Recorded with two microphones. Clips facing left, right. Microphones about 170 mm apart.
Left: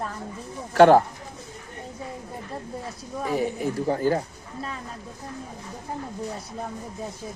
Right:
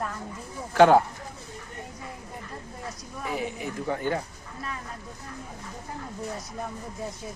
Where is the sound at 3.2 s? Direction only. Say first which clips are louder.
Left 6 dB; 40° left (ahead or behind).